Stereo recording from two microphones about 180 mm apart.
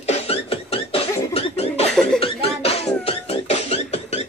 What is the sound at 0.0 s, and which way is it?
Cough, 35° left (ahead or behind).